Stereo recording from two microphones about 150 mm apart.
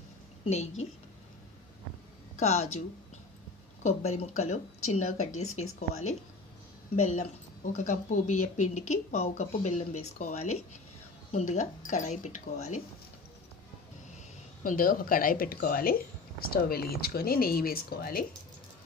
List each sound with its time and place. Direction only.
0.5 s speech: 50° left (ahead or behind)
2.4 s speech: 45° left (ahead or behind)
3.8 s speech: 45° left (ahead or behind)
14.6 s speech: 65° left (ahead or behind)